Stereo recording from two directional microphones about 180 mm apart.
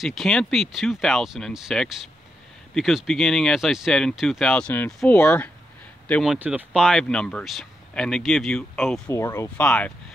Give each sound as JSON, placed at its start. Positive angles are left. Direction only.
{"t": 0.0, "sound": "speech", "side_deg": 0}
{"t": 6.3, "sound": "speech", "side_deg": -5}
{"t": 9.1, "sound": "speech", "side_deg": 15}